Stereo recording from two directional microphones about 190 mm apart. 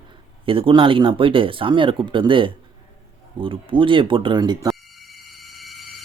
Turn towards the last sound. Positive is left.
turn(degrees=-20)  # may be behind; listen again after turning